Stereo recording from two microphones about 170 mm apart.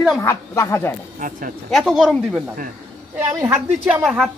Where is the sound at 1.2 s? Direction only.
50° right (ahead or behind).